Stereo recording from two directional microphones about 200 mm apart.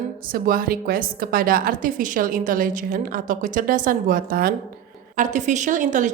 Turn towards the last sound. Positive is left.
turn(degrees=-40)  # may be behind; listen again after turning